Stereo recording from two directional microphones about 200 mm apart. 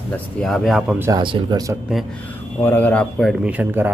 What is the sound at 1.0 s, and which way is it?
Speech, 20° right (ahead or behind).